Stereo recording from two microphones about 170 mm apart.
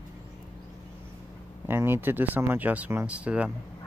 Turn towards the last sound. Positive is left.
turn(degrees=-5)  # may be behind; listen again after turning